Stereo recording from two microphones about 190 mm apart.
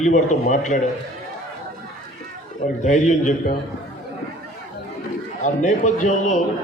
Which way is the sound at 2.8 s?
40° left (ahead or behind).